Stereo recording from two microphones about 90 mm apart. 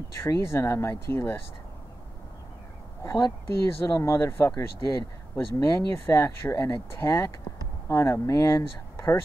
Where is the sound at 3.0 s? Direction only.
40° left (ahead or behind).